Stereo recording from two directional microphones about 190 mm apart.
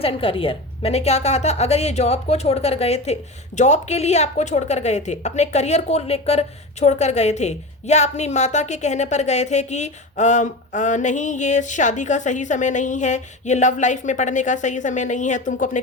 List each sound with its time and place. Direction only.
0.0 s a woman's voice: 30° left (ahead or behind)